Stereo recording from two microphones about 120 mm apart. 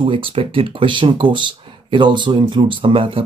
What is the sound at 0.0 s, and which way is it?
Speech, 45° right (ahead or behind).